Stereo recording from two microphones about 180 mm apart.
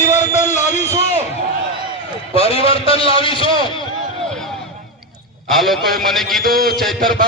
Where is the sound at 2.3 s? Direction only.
30° left (ahead or behind).